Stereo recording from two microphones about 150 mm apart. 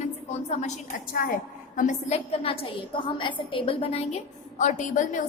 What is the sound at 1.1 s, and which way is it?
Speech, 65° left (ahead or behind).